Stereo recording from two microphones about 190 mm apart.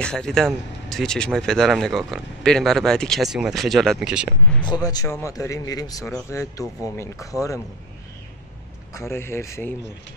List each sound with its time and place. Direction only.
0.0 s speech: 5° left (ahead or behind)
4.6 s speech: 20° left (ahead or behind)
8.9 s speech: 15° left (ahead or behind)